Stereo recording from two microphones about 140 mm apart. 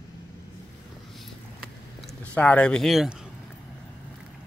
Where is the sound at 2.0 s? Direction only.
10° left (ahead or behind).